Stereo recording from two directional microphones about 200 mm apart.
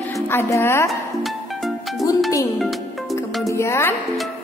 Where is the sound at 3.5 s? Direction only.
15° left (ahead or behind).